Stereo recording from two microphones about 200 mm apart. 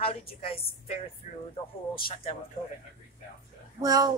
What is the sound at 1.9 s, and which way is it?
Speech, 25° left (ahead or behind).